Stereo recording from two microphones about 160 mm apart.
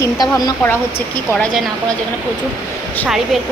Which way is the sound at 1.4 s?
Centre (ahead or behind).